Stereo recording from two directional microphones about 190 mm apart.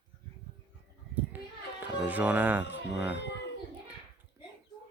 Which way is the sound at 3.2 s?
65° left (ahead or behind).